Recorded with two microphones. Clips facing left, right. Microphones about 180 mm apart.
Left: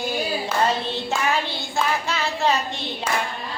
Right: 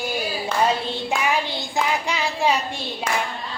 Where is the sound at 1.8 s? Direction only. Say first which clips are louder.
Even; 15° right (ahead or behind).